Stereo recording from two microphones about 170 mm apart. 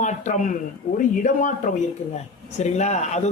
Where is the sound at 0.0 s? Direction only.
45° left (ahead or behind).